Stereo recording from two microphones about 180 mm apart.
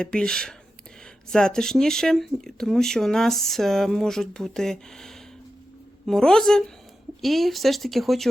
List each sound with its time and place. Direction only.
0.0 s speech: 5° left (ahead or behind)